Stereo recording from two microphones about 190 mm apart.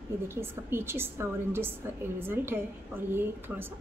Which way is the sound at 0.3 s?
10° right (ahead or behind).